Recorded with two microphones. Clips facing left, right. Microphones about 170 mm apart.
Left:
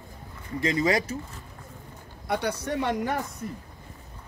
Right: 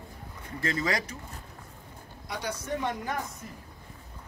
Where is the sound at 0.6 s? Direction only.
20° left (ahead or behind).